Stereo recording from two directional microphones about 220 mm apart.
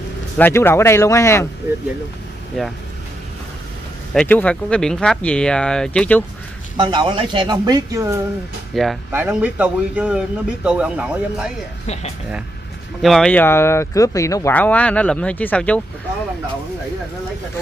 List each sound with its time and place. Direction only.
0.4 s speech: 10° left (ahead or behind)
4.1 s a man's voice: 5° left (ahead or behind)
6.8 s speech: 20° right (ahead or behind)
8.7 s a man's voice: centre (ahead or behind)
11.8 s speech: 30° left (ahead or behind)
13.0 s speech: centre (ahead or behind)